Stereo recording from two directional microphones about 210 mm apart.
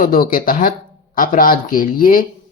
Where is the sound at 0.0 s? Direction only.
45° left (ahead or behind).